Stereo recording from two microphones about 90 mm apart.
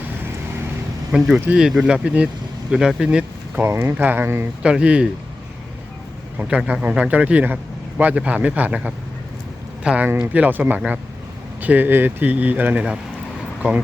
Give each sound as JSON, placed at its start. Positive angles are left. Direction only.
{"t": 1.1, "sound": "speech", "side_deg": -10}
{"t": 3.6, "sound": "a man's voice", "side_deg": -30}
{"t": 4.6, "sound": "a man's voice", "side_deg": -10}
{"t": 6.7, "sound": "a man's voice", "side_deg": -10}